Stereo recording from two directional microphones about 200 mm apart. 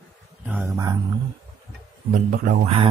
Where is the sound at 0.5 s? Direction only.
10° right (ahead or behind).